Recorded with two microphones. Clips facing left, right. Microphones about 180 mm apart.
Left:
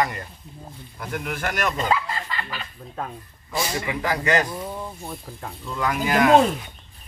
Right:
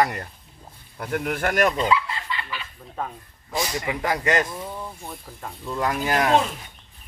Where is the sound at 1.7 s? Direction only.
45° left (ahead or behind).